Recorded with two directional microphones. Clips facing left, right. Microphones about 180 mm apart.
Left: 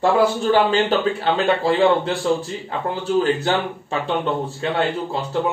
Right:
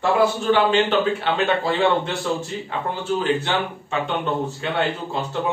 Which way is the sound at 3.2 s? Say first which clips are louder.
Left 2 dB; 40° left (ahead or behind).